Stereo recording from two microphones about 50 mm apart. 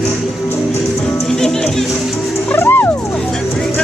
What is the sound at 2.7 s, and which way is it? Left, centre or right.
Music, left.